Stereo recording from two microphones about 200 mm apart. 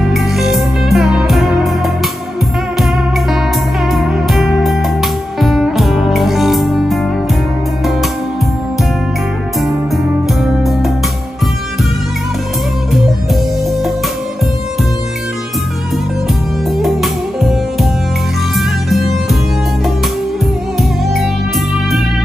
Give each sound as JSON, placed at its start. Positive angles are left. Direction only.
{"t": 0.1, "sound": "music", "side_deg": 0}
{"t": 3.8, "sound": "music", "side_deg": 0}
{"t": 10.4, "sound": "music", "side_deg": 0}
{"t": 16.7, "sound": "music", "side_deg": 0}
{"t": 18.9, "sound": "music", "side_deg": 0}